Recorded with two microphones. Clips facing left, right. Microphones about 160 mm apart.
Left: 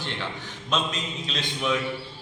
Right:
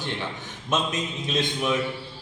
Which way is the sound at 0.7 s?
20° right (ahead or behind).